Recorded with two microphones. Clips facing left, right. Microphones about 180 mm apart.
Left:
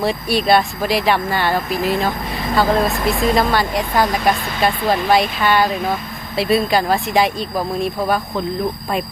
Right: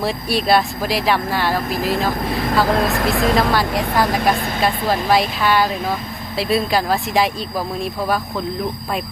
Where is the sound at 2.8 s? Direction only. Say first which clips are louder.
Even; 65° right (ahead or behind).